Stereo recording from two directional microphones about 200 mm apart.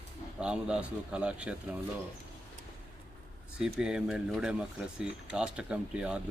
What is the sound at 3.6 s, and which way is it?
Speech, 5° right (ahead or behind).